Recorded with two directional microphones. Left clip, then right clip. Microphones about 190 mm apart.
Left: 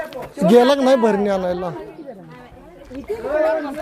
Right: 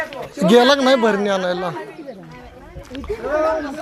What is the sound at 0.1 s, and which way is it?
Speech, 20° left (ahead or behind).